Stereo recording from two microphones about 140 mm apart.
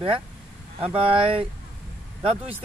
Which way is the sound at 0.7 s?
40° right (ahead or behind).